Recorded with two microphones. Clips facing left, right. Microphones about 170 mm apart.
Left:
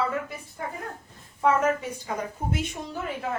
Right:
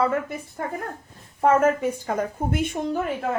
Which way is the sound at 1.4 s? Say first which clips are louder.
Right 4 dB; 50° right (ahead or behind).